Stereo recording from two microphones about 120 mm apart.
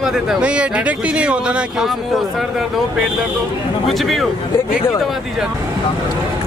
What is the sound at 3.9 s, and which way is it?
Speech, centre (ahead or behind).